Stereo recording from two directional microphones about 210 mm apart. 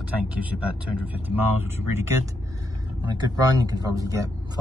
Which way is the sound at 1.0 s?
10° right (ahead or behind).